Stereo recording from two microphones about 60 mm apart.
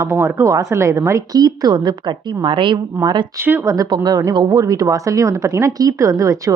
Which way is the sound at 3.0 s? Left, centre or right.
Right.